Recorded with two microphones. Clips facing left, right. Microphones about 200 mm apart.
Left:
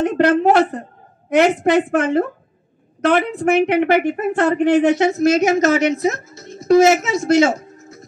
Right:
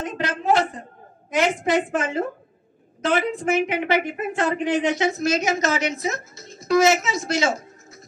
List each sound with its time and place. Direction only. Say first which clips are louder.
0.0 s a woman's voice: left 12 dB; 65° left (ahead or behind)